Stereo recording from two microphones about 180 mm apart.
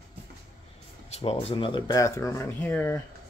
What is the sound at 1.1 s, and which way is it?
Speech, 35° left (ahead or behind).